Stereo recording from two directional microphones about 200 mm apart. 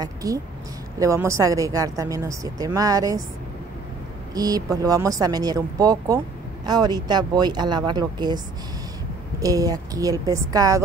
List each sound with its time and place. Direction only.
0.0 s a woman's voice: 15° right (ahead or behind)
4.4 s speech: 20° right (ahead or behind)
9.4 s a woman's voice: 15° right (ahead or behind)